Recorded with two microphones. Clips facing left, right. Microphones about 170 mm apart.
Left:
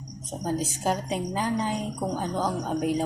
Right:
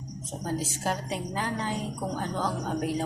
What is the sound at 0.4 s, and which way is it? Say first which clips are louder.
Speech: left 3 dB; 15° left (ahead or behind).